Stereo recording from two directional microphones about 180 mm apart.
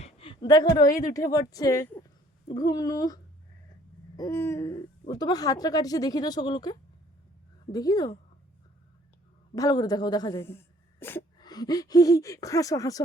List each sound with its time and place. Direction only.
0.0 s a sound: 30° left (ahead or behind)
1.1 s speech: 20° left (ahead or behind)
4.2 s speech: 15° left (ahead or behind)
9.6 s speech: 20° left (ahead or behind)